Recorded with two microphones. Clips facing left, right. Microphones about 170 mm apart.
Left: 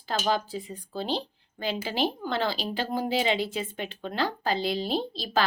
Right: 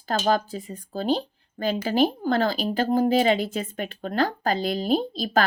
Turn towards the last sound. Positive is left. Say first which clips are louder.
# right 6 dB
turn(degrees=-45)  # may be behind; listen again after turning